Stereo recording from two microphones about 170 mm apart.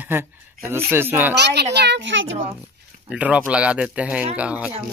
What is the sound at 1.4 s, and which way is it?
Speech, 80° right.